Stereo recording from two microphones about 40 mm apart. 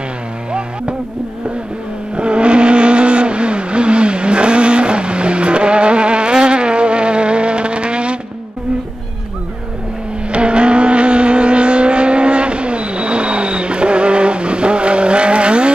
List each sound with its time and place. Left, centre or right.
0.5 s music: right
2.1 s vehicle: right
10.3 s vehicle: right